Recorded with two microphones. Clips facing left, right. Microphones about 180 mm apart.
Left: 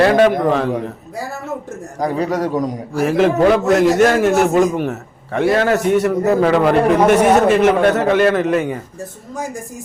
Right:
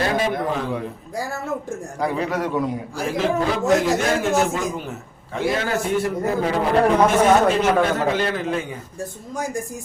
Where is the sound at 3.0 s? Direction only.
70° left (ahead or behind).